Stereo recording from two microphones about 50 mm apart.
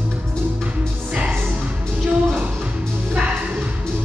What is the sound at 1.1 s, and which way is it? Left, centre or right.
Music, right.